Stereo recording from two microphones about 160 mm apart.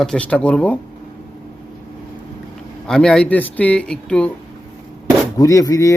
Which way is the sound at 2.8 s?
5° left (ahead or behind).